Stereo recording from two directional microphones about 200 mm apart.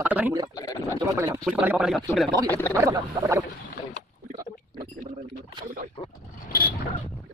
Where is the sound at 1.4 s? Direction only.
5° right (ahead or behind).